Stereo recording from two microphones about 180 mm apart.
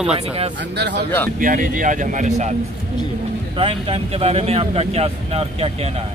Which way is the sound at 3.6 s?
30° right (ahead or behind).